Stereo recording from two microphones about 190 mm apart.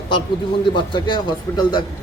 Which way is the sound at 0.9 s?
25° left (ahead or behind).